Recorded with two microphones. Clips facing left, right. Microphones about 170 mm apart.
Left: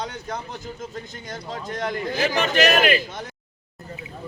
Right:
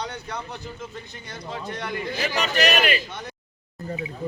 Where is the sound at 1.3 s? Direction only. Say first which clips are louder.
Left 1 dB; 45° left (ahead or behind).